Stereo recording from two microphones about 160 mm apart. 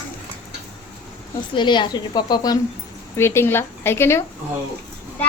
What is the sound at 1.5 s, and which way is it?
A woman's voice, 30° left (ahead or behind).